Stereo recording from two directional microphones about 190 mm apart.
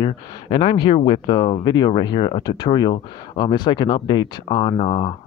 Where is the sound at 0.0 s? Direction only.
25° left (ahead or behind).